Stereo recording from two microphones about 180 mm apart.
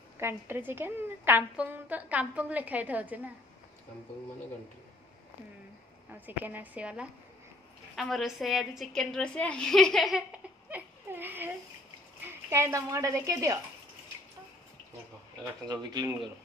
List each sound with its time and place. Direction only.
0.2 s a woman's voice: 10° right (ahead or behind)
6.1 s a woman's voice: 10° right (ahead or behind)
10.7 s a sound: 10° right (ahead or behind)
12.4 s a woman's voice: 15° right (ahead or behind)
15.7 s speech: 25° right (ahead or behind)